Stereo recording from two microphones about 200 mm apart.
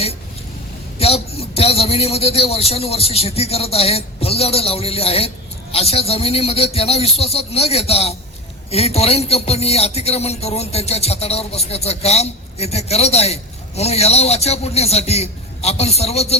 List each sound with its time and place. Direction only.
0.9 s a man's voice: 30° left (ahead or behind)